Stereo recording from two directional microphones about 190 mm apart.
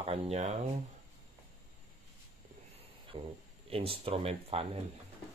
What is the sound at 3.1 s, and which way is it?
Speech, 30° right (ahead or behind).